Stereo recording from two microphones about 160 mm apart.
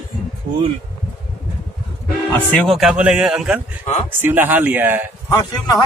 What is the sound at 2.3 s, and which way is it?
Speech, 5° left (ahead or behind).